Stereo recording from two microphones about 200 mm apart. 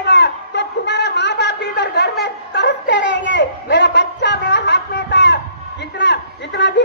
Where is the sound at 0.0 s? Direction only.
60° left (ahead or behind).